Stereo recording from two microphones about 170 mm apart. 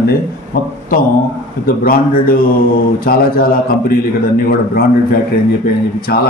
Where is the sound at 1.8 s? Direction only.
55° left (ahead or behind).